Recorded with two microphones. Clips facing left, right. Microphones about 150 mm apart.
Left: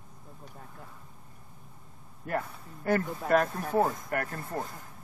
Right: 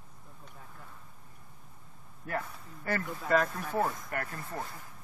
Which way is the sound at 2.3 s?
55° left (ahead or behind).